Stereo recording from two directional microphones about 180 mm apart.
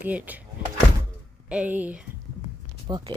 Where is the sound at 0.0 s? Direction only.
10° right (ahead or behind).